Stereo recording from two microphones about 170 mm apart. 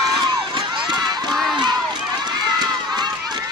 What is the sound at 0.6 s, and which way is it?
Run, 25° right (ahead or behind).